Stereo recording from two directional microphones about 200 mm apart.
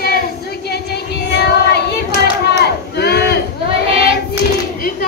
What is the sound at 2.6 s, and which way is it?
Crowd, 55° left (ahead or behind).